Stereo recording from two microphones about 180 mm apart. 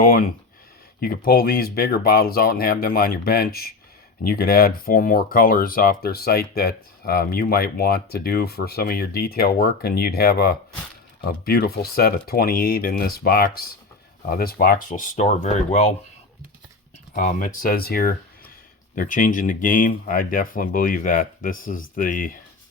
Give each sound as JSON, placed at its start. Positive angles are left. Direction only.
{"t": 0.0, "sound": "speech", "side_deg": 55}
{"t": 17.2, "sound": "speech", "side_deg": 45}